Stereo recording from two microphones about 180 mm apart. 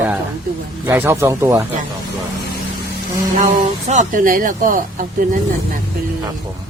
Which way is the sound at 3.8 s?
45° right (ahead or behind).